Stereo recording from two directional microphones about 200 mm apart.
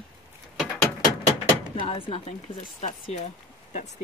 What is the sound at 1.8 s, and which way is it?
Speech, 25° left (ahead or behind).